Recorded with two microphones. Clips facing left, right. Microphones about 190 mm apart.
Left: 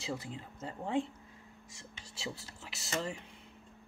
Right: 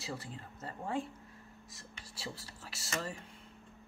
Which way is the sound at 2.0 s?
20° left (ahead or behind).